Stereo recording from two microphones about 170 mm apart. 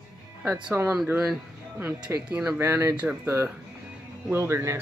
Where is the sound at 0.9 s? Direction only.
5° right (ahead or behind).